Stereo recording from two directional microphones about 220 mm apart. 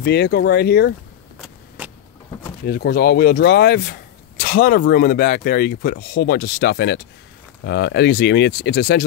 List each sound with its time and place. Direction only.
0.0 s speech: 50° left (ahead or behind)
1.8 s vehicle: 10° right (ahead or behind)
2.6 s speech: 45° left (ahead or behind)